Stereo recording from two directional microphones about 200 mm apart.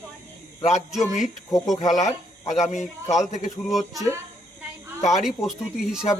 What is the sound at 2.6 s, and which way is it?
Speech, 35° left (ahead or behind).